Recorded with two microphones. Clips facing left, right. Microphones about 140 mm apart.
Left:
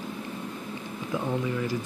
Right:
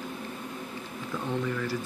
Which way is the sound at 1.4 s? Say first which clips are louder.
Left 2 dB; 15° left (ahead or behind).